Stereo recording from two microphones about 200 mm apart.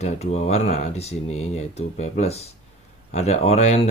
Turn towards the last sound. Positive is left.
turn(degrees=30)  # may be behind; listen again after turning